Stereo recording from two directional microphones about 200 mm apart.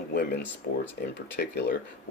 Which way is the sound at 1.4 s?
55° left (ahead or behind).